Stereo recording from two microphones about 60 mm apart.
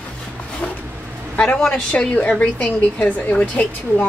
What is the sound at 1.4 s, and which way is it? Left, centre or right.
A woman's voice, centre.